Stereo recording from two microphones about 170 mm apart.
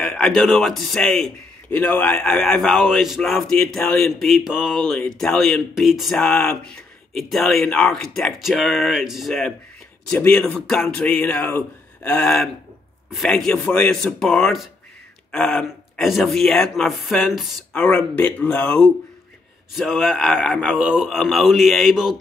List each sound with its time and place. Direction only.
0.0 s a man's voice: 5° left (ahead or behind)